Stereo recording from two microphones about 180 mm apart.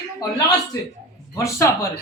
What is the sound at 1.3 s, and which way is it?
Speech, 15° left (ahead or behind).